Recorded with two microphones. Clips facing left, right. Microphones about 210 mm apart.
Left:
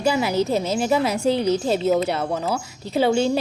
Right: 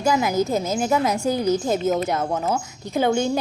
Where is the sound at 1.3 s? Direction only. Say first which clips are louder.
Left 1 dB; 30° left (ahead or behind).